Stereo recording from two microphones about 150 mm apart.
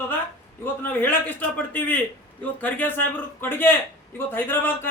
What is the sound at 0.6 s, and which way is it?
A man's voice, 15° left (ahead or behind).